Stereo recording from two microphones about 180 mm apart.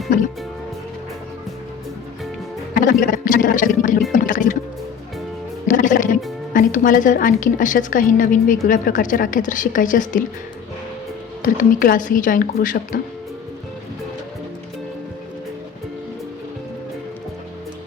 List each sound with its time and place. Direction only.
2.8 s speech: 50° left (ahead or behind)
4.1 s music: 45° left (ahead or behind)
5.6 s a woman's voice: 45° left (ahead or behind)
11.4 s a woman's voice: 50° left (ahead or behind)